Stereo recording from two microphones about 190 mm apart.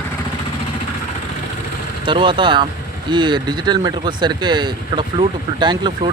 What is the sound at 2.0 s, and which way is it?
Speech, 25° right (ahead or behind).